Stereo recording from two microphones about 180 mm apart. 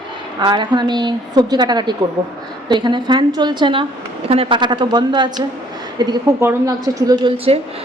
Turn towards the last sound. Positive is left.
turn(degrees=-30)  # may be behind; listen again after turning